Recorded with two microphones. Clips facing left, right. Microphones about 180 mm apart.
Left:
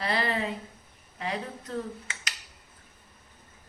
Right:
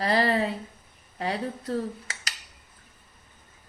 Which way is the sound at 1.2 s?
35° right (ahead or behind).